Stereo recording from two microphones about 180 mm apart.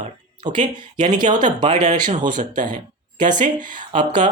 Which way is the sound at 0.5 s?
25° right (ahead or behind).